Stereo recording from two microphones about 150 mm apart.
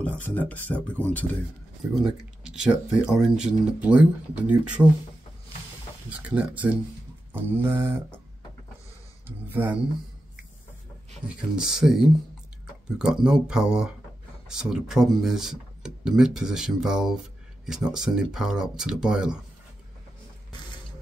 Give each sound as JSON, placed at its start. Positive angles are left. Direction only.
{"t": 0.0, "sound": "speech", "side_deg": 10}
{"t": 2.0, "sound": "speech", "side_deg": -5}
{"t": 6.0, "sound": "speech", "side_deg": -10}
{"t": 9.5, "sound": "speech", "side_deg": -10}
{"t": 11.2, "sound": "speech", "side_deg": -5}